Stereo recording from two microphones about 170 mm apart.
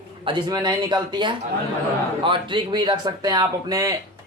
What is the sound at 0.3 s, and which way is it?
Speech, 25° right (ahead or behind).